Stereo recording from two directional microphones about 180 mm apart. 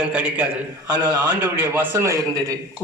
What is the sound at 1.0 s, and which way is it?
A man's voice, 20° right (ahead or behind).